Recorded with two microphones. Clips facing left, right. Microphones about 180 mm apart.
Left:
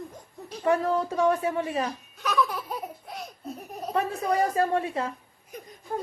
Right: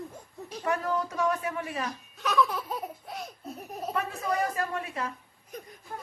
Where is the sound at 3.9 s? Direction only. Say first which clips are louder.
Left 5 dB; 30° left (ahead or behind).